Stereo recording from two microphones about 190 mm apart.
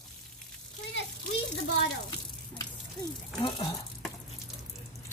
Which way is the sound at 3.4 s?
20° left (ahead or behind).